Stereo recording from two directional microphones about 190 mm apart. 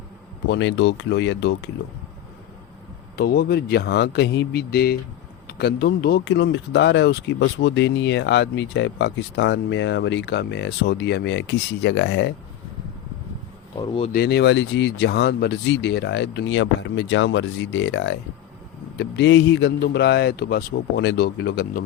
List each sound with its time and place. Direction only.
0.5 s speech: 75° left (ahead or behind)
3.2 s speech: 55° left (ahead or behind); by 12.3 s 70° left (ahead or behind)
13.7 s speech: 25° left (ahead or behind)
14.1 s speech: 55° left (ahead or behind)